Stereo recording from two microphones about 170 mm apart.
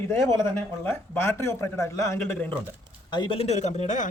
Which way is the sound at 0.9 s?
15° left (ahead or behind).